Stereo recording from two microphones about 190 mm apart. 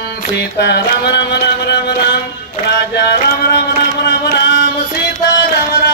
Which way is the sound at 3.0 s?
60° left (ahead or behind).